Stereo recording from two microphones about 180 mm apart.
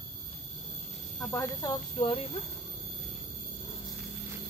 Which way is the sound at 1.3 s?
20° left (ahead or behind).